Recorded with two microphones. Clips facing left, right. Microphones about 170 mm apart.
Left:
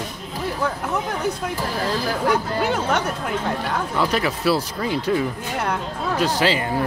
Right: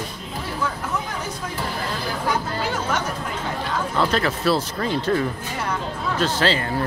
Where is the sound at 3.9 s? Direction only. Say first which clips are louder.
Right 1 dB; 10° left (ahead or behind).